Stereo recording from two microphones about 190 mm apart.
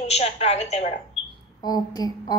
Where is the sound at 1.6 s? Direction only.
20° left (ahead or behind).